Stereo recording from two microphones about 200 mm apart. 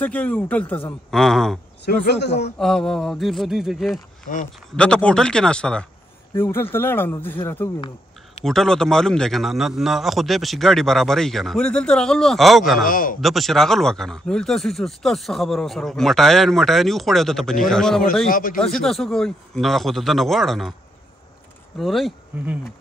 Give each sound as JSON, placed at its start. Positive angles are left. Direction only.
{"t": 0.0, "sound": "a man's voice", "side_deg": 5}
{"t": 2.0, "sound": "a man's voice", "side_deg": 60}
{"t": 2.6, "sound": "a man's voice", "side_deg": 0}
{"t": 12.8, "sound": "a man's voice", "side_deg": 45}
{"t": 13.2, "sound": "speech", "side_deg": 0}
{"t": 18.3, "sound": "a man's voice", "side_deg": 45}
{"t": 18.6, "sound": "speech", "side_deg": 0}
{"t": 21.7, "sound": "speech", "side_deg": 0}